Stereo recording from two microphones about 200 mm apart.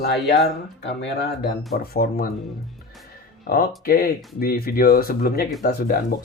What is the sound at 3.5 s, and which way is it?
Speech, 50° left (ahead or behind).